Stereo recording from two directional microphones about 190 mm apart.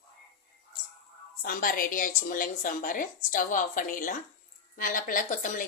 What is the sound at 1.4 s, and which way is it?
Speech, 50° left (ahead or behind).